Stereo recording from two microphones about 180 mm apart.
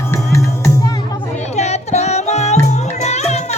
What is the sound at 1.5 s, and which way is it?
Music, 40° left (ahead or behind).